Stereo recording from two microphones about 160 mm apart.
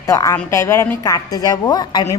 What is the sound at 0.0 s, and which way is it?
A woman's voice, 20° left (ahead or behind).